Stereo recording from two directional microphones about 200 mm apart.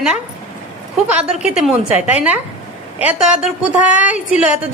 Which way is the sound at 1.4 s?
5° right (ahead or behind).